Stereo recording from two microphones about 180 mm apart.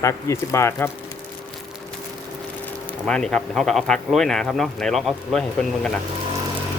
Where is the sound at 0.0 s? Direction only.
15° left (ahead or behind).